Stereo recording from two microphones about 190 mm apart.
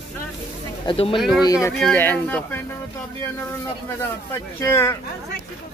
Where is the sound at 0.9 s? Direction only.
25° left (ahead or behind).